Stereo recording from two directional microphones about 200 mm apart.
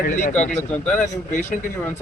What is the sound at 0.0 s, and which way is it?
Speech, 40° left (ahead or behind).